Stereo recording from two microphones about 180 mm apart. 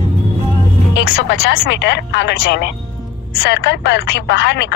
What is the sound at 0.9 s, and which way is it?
Speech, 90° left.